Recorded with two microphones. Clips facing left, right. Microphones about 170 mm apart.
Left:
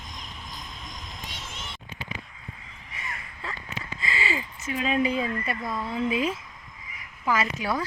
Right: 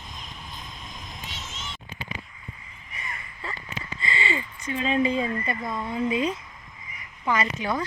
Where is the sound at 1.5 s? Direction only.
60° left (ahead or behind).